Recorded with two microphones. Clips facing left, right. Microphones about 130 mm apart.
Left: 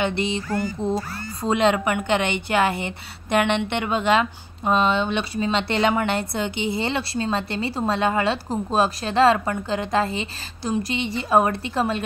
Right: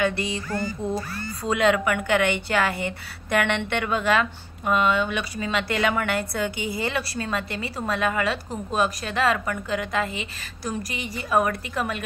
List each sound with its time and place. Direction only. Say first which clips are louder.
0.0 s speech: left 1 dB; 25° left (ahead or behind)